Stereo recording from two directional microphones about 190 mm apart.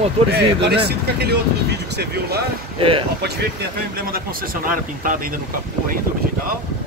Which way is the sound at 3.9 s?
50° right (ahead or behind).